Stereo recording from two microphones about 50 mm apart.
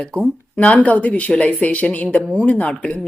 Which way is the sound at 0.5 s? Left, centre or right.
Left.